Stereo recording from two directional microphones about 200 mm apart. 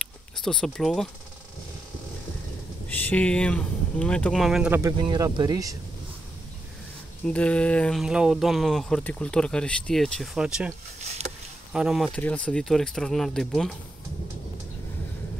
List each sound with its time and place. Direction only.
0.0 s a sound: 5° left (ahead or behind)
2.9 s speech: 10° left (ahead or behind); by 4.9 s 10° right (ahead or behind)
5.0 s speech: 20° right (ahead or behind)
7.2 s speech: 5° left (ahead or behind)
11.0 s a sound: 35° right (ahead or behind)
11.7 s speech: 5° right (ahead or behind)